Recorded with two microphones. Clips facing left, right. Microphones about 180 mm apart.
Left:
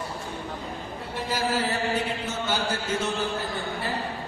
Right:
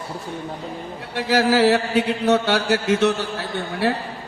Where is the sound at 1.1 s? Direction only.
80° right.